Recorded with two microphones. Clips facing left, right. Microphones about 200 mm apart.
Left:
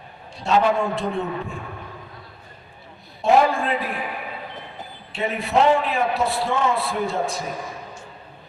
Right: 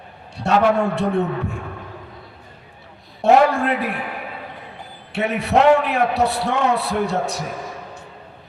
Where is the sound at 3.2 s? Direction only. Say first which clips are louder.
Right 3 dB; 70° right (ahead or behind).